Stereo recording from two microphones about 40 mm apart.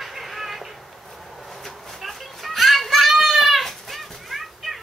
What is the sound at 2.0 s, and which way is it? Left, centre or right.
Children playing, centre.